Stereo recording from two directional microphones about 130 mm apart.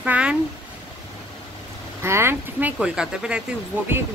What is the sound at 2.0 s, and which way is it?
A woman's voice, 20° right (ahead or behind).